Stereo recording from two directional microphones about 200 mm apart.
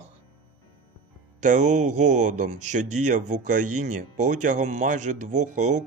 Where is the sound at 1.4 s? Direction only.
40° right (ahead or behind).